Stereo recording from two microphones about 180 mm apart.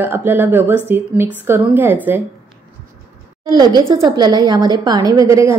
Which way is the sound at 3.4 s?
20° right (ahead or behind).